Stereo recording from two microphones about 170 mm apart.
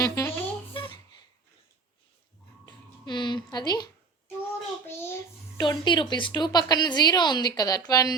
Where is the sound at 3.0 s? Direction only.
25° left (ahead or behind).